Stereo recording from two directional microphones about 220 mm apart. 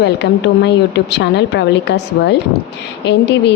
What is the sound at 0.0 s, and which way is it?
A woman's voice, 50° left (ahead or behind).